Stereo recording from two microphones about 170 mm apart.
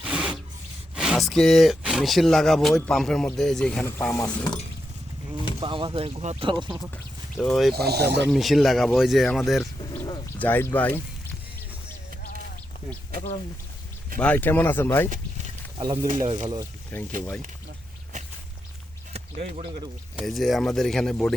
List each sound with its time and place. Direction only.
0.0 s rub: 5° right (ahead or behind)
0.9 s speech: 5° right (ahead or behind)
3.9 s speech: 15° left (ahead or behind)
5.5 s speech: 30° right (ahead or behind)
6.9 s speech: centre (ahead or behind)
7.7 s speech: 70° right (ahead or behind)
8.3 s speech: centre (ahead or behind)
9.9 s a sound: 25° left (ahead or behind)
10.3 s speech: 10° left (ahead or behind)
14.2 s speech: 10° left (ahead or behind)
16.1 s speech: 25° right (ahead or behind)
16.9 s speech: 15° left (ahead or behind)
19.1 s a sound: 40° right (ahead or behind)
20.1 s speech: centre (ahead or behind)